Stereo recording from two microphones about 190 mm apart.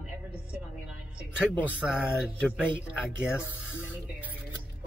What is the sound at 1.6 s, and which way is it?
Speech, 5° right (ahead or behind).